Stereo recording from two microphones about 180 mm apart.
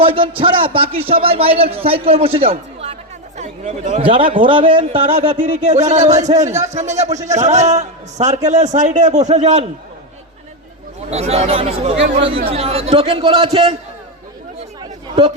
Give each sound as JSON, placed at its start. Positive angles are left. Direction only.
{"t": 0.0, "sound": "a man's voice", "side_deg": -30}
{"t": 11.1, "sound": "a man's voice", "side_deg": -35}